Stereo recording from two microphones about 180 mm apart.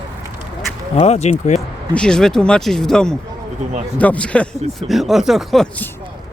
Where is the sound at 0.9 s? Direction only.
35° left (ahead or behind).